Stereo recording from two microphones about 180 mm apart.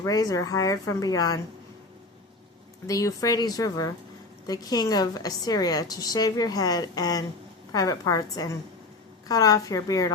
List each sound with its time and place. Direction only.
0.0 s a woman's voice: 20° left (ahead or behind)
2.8 s a woman's voice: 20° left (ahead or behind)